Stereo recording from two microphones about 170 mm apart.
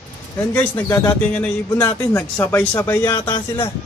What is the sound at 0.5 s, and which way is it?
Speech, 10° left (ahead or behind).